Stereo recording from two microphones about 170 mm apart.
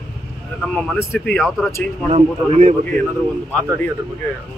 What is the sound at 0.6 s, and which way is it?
Speech, 5° left (ahead or behind).